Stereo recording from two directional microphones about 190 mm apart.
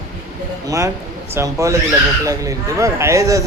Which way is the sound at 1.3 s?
15° right (ahead or behind).